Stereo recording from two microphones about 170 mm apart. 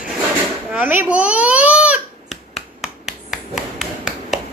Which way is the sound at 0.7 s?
10° right (ahead or behind).